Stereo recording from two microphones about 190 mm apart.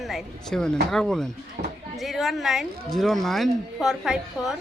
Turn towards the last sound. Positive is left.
turn(degrees=0)  # may be behind; listen again after turning